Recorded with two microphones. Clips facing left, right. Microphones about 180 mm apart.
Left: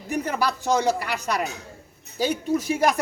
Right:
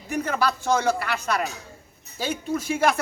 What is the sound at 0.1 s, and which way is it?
Speech, 15° left (ahead or behind).